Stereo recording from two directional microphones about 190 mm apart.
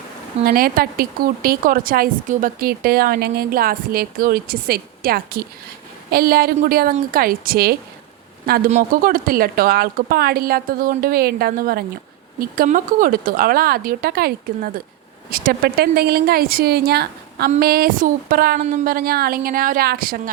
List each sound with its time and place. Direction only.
0.4 s a woman's voice: 50° right (ahead or behind)